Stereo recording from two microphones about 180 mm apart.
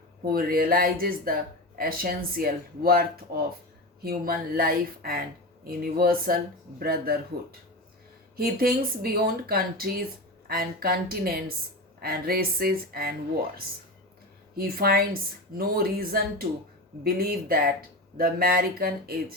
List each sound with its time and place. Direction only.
0.3 s speech: 55° right (ahead or behind)
8.4 s speech: 55° right (ahead or behind)
14.5 s speech: 55° right (ahead or behind)